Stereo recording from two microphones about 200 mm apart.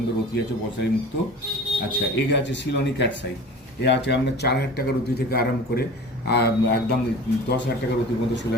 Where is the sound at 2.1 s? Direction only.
60° left (ahead or behind).